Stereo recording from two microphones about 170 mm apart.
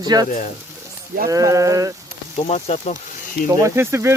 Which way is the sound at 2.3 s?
40° left (ahead or behind).